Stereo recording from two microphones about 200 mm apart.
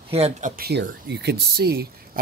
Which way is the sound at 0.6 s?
50° right (ahead or behind).